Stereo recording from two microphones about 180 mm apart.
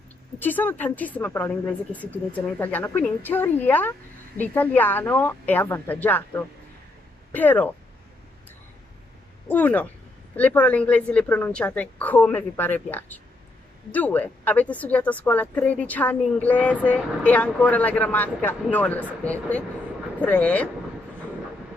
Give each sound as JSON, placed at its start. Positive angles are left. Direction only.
{"t": 0.4, "sound": "a woman's voice", "side_deg": 10}
{"t": 9.5, "sound": "a woman's voice", "side_deg": 10}